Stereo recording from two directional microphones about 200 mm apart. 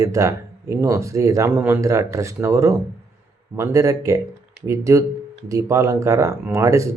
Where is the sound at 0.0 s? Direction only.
15° right (ahead or behind).